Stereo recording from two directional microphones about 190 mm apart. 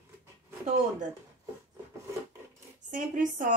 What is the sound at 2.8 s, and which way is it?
Speech, 40° right (ahead or behind).